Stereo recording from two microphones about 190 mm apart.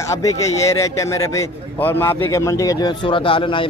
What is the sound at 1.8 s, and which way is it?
Speech, 10° left (ahead or behind).